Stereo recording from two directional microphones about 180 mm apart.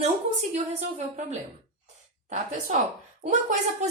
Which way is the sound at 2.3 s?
50° right (ahead or behind).